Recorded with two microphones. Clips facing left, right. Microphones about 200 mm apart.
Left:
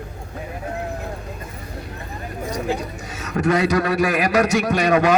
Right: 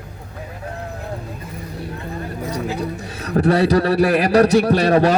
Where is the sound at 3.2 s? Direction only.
35° right (ahead or behind).